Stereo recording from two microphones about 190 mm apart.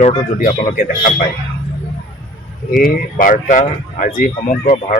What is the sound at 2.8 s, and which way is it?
Speech, 45° left (ahead or behind).